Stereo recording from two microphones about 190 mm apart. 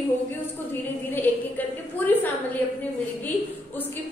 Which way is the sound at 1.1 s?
10° left (ahead or behind).